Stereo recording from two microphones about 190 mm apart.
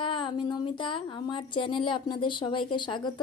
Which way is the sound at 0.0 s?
25° left (ahead or behind).